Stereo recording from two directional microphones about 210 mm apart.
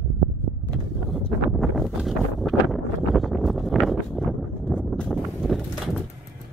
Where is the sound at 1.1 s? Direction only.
Centre (ahead or behind).